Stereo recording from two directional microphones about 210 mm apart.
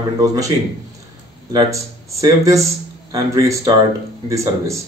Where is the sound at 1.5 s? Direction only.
15° right (ahead or behind).